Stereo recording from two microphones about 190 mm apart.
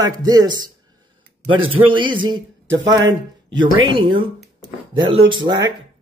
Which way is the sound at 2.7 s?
75° right (ahead or behind).